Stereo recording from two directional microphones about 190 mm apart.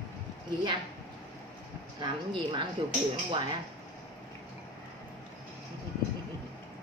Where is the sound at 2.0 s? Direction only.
25° right (ahead or behind).